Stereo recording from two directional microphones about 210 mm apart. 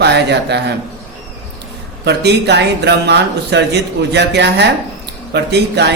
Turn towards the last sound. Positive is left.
turn(degrees=-55)  # may be behind; listen again after turning